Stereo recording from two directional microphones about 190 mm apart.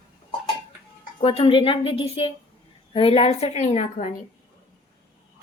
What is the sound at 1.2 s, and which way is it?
A woman's voice, 25° left (ahead or behind).